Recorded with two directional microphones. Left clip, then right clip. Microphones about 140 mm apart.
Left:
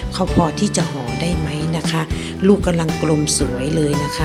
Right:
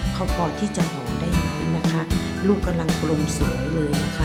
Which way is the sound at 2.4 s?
30° left (ahead or behind).